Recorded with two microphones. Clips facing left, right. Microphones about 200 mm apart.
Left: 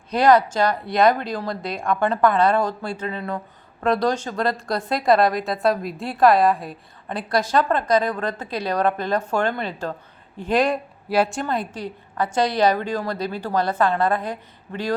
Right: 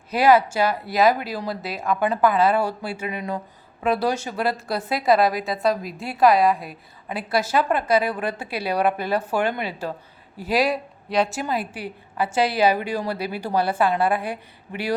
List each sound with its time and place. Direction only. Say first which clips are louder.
0.1 s speech: left 1 dB; 5° right (ahead or behind)